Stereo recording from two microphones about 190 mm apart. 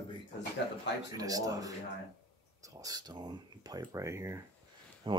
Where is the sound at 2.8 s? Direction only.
20° right (ahead or behind).